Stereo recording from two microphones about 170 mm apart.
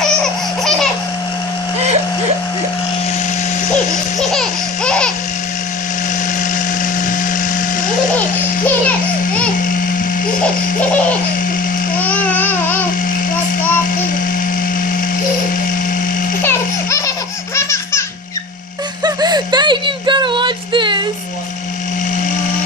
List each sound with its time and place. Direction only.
4.3 s laughter: 5° left (ahead or behind)
12.0 s babbling: 10° left (ahead or behind)
16.4 s baby laughter: 15° left (ahead or behind)
17.6 s music: 15° left (ahead or behind)
19.0 s a sound: 25° right (ahead or behind)